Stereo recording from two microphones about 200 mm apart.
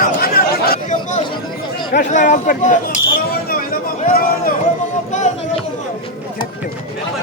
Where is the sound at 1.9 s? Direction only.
40° left (ahead or behind).